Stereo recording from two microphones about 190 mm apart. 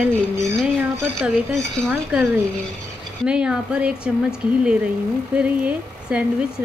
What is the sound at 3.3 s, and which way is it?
Speech, 5° right (ahead or behind).